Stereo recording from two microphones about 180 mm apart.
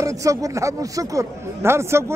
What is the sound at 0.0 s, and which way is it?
Speech, 15° right (ahead or behind).